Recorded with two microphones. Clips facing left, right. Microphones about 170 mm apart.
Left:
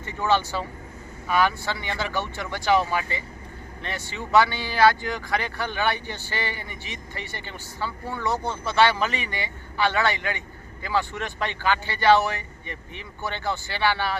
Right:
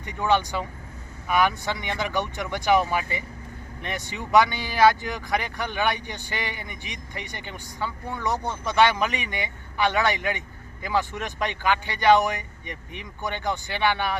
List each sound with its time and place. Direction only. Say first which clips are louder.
0.0 s speech: even; 15° right (ahead or behind)